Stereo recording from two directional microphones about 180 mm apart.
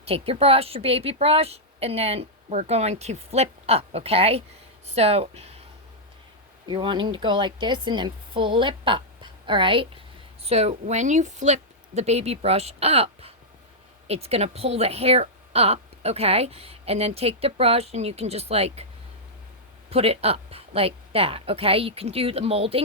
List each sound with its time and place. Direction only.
0.0 s speech: 35° right (ahead or behind)
6.7 s speech: 25° right (ahead or behind)
19.9 s speech: 35° right (ahead or behind)